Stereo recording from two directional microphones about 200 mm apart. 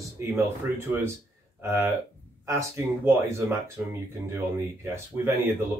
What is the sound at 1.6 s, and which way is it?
Speech, 10° right (ahead or behind).